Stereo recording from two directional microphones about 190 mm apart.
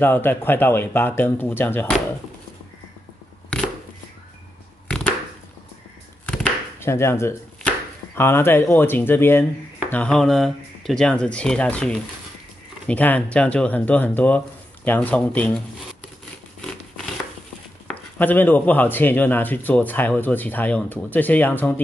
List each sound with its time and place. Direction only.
0.0 s speech: 10° left (ahead or behind)
4.8 s chopping: 5° left (ahead or behind)
6.2 s chopping: 10° left (ahead or behind)
8.2 s speech: 10° left (ahead or behind)
17.8 s speech: 10° left (ahead or behind)